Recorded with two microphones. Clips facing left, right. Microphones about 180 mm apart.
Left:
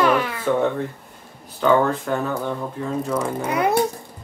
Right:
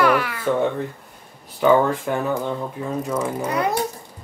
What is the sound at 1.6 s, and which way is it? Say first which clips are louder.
Speech: right 1 dB; 15° right (ahead or behind).